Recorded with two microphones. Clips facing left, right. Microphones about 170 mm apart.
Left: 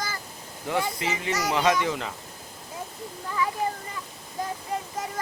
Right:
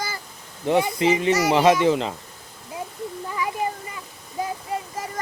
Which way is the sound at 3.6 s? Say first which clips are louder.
Right 4 dB; 15° right (ahead or behind).